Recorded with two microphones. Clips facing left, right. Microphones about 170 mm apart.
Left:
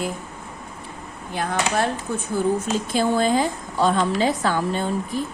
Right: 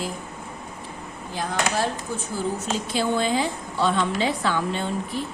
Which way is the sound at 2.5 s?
50° left (ahead or behind).